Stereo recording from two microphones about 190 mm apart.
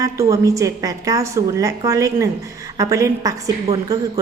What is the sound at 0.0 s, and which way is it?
A woman's voice, 15° right (ahead or behind).